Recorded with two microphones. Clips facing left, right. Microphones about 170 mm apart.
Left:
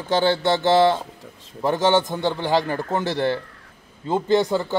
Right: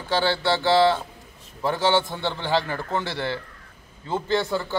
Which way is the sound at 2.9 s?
45° left (ahead or behind).